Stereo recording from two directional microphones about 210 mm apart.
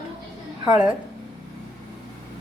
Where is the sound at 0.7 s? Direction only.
5° right (ahead or behind).